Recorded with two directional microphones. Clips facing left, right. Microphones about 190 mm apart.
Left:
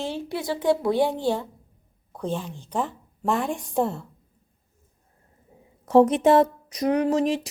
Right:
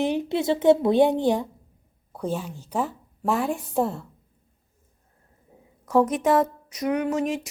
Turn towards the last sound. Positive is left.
turn(degrees=35)  # may be behind; listen again after turning